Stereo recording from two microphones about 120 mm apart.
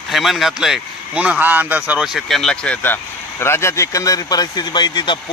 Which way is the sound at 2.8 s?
20° left (ahead or behind).